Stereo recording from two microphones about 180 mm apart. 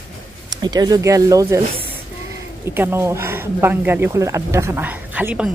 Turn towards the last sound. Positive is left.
turn(degrees=-10)  # may be behind; listen again after turning